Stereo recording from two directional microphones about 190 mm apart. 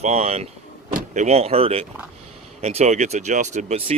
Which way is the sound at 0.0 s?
35° right (ahead or behind).